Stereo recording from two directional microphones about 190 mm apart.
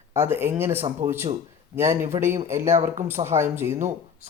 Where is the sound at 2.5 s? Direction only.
15° right (ahead or behind).